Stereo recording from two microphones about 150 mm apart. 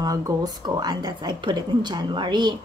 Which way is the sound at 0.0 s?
25° right (ahead or behind).